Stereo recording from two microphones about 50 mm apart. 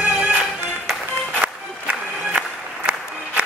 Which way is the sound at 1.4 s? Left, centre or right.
Right.